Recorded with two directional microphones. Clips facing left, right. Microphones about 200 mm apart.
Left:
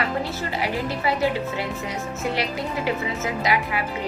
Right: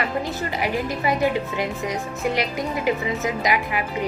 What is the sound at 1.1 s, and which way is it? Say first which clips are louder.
Speech: right 1 dB; 15° right (ahead or behind).